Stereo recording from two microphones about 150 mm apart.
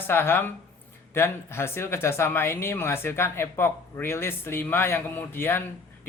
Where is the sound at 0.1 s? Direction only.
15° left (ahead or behind).